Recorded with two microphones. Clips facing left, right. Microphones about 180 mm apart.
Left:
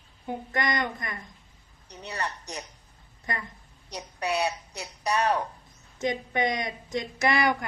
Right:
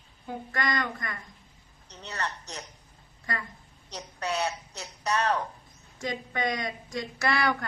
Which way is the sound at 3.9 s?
15° left (ahead or behind).